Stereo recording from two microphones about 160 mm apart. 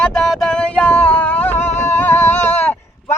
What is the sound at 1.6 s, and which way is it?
Singing, 45° left (ahead or behind).